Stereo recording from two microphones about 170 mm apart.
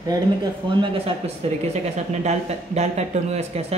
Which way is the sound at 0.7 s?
30° right (ahead or behind).